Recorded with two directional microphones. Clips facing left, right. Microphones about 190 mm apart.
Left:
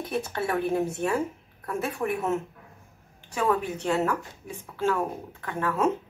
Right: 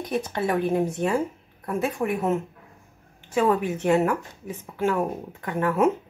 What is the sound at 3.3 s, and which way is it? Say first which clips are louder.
Speech: right 4 dB; 15° right (ahead or behind).